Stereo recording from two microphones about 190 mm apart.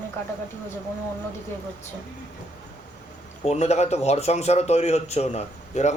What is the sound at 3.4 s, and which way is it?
A man's voice, 35° left (ahead or behind).